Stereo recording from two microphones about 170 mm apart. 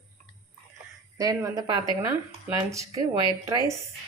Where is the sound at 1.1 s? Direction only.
20° right (ahead or behind).